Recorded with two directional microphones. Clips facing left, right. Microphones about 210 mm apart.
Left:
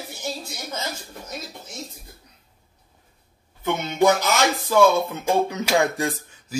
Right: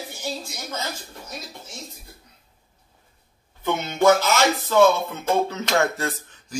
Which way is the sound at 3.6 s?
15° left (ahead or behind).